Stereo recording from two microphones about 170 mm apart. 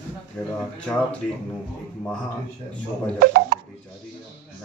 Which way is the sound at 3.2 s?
65° right (ahead or behind).